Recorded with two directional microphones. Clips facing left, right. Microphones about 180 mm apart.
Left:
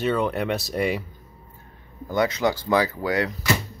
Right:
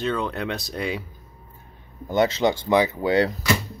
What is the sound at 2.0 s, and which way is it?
Speech, 25° right (ahead or behind).